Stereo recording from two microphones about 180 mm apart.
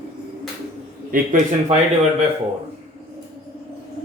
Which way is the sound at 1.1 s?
45° right (ahead or behind).